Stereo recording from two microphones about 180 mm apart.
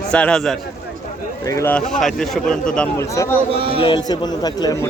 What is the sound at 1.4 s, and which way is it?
Speech, 15° left (ahead or behind).